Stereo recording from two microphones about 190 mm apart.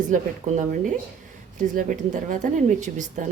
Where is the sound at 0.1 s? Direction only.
40° right (ahead or behind).